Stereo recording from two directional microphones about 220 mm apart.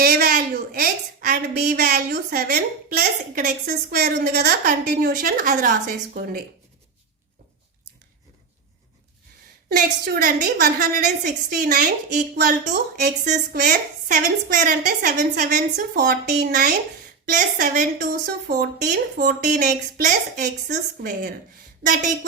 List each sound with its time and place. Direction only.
0.0 s a woman's voice: 45° right (ahead or behind)
9.6 s a woman's voice: 40° right (ahead or behind)